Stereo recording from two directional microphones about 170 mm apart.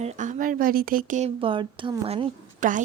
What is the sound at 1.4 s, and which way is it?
Speech, 30° right (ahead or behind).